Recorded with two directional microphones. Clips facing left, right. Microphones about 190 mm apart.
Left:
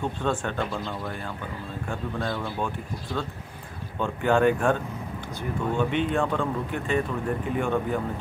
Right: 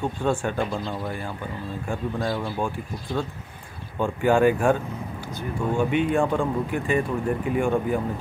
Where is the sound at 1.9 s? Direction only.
10° right (ahead or behind).